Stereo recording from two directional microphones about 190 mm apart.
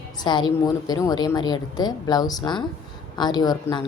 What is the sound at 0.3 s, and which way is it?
A woman's voice, 25° left (ahead or behind).